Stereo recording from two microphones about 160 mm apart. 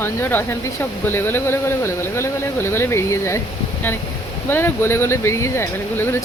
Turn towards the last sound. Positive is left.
turn(degrees=15)  # may be behind; listen again after turning